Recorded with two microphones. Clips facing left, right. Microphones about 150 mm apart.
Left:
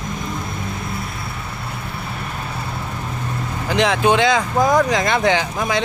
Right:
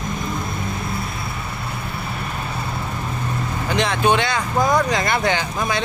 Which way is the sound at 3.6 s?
90° left.